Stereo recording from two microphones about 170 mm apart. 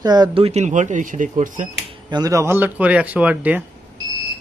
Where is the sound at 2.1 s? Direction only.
20° right (ahead or behind).